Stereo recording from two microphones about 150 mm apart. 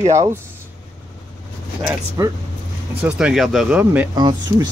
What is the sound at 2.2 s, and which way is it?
Speech, 20° right (ahead or behind).